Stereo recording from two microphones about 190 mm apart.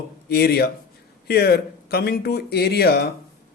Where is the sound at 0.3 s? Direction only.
55° left (ahead or behind).